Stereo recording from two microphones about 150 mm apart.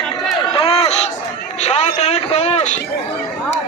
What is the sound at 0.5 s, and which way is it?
Crowd, 40° left (ahead or behind).